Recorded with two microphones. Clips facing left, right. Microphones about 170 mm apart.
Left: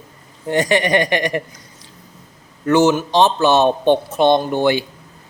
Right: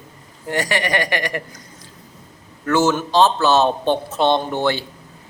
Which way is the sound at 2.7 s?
15° left (ahead or behind).